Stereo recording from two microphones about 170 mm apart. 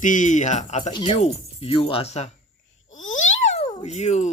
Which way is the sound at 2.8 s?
50° left (ahead or behind).